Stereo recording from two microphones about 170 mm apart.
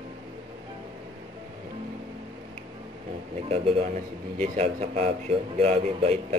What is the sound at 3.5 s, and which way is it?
A man's voice, 35° right (ahead or behind).